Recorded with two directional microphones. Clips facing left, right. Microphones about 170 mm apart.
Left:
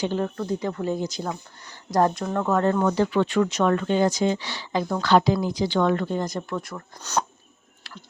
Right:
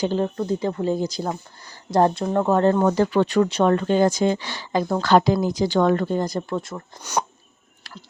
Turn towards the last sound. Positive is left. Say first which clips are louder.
# right 1 dB
turn(degrees=-10)  # may be behind; listen again after turning